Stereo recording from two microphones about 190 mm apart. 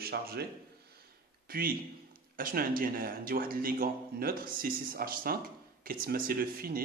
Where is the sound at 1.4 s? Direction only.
50° right (ahead or behind).